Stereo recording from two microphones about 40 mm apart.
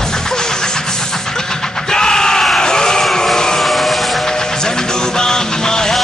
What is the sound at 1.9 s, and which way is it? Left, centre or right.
Yell, centre.